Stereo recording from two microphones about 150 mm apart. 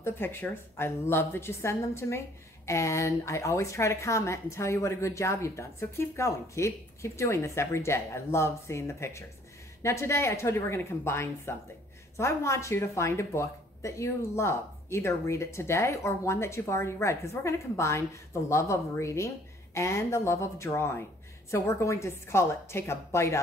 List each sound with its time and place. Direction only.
0.0 s a woman's voice: 15° left (ahead or behind)